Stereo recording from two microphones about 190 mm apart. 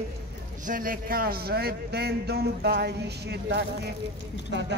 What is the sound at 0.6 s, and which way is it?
A man's voice, 45° right (ahead or behind).